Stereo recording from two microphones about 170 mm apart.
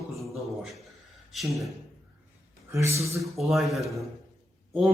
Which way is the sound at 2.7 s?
15° right (ahead or behind).